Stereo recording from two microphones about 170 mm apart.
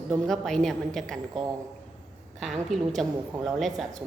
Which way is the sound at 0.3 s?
5° left (ahead or behind).